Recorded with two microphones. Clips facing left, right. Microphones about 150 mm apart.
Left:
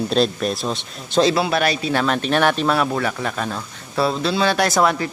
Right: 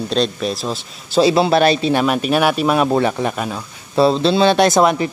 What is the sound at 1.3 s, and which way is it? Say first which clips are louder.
A man's voice: right 6 dB; 30° right (ahead or behind).